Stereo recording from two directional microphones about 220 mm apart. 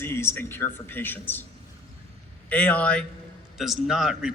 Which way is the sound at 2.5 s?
5° left (ahead or behind).